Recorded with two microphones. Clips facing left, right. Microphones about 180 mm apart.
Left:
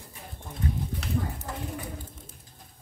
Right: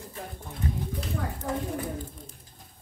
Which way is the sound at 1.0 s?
75° left (ahead or behind).